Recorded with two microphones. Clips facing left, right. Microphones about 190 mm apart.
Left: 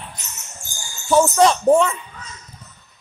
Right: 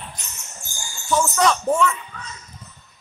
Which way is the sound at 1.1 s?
30° left (ahead or behind).